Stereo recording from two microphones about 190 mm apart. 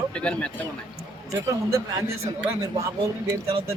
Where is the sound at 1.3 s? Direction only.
15° right (ahead or behind).